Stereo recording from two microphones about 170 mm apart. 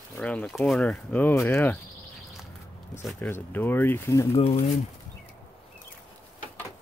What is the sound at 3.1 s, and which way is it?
Speech, 10° left (ahead or behind).